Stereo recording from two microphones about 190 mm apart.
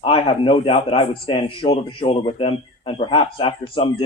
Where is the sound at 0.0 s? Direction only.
30° left (ahead or behind).